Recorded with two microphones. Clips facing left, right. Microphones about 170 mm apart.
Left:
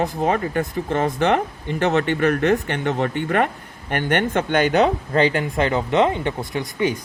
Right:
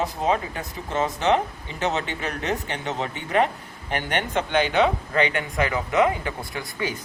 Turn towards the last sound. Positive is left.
turn(degrees=20)  # may be behind; listen again after turning